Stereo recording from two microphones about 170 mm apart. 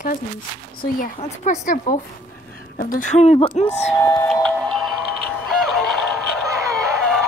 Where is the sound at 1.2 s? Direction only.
45° left (ahead or behind).